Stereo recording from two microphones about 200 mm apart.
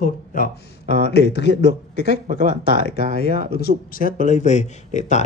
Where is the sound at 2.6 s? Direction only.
55° left (ahead or behind).